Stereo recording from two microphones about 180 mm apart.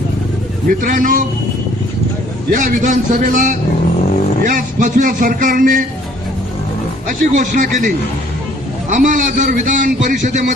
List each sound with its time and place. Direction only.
0.7 s a man's voice: 50° right (ahead or behind)
2.5 s a man's voice: 45° right (ahead or behind)
7.1 s a man's voice: 45° right (ahead or behind)